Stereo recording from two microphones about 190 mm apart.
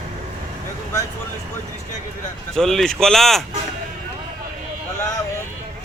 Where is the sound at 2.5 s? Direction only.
5° left (ahead or behind).